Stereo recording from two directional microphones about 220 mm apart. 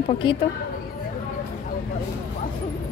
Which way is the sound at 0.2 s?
20° left (ahead or behind).